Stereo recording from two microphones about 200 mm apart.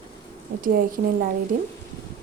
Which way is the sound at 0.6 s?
45° right (ahead or behind).